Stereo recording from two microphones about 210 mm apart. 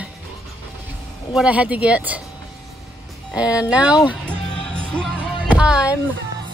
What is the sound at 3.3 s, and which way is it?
Speech, 5° right (ahead or behind).